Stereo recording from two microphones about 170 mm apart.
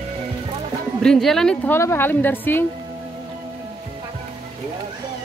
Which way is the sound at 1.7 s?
15° left (ahead or behind).